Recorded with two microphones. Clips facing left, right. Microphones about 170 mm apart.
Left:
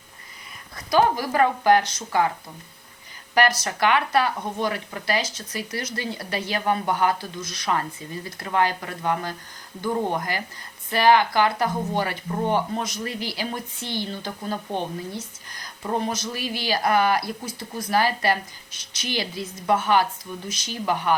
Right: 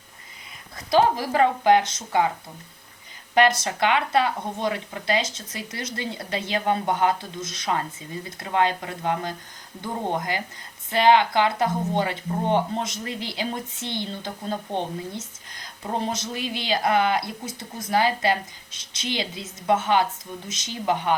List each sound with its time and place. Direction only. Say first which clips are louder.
0.9 s speech: even; 25° right (ahead or behind)
3.3 s speech: right 2 dB; 25° right (ahead or behind)